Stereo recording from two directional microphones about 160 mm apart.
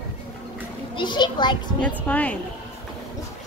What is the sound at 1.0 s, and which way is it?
Speech, 30° left (ahead or behind).